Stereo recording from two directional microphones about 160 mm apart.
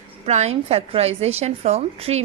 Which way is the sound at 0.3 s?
45° right (ahead or behind).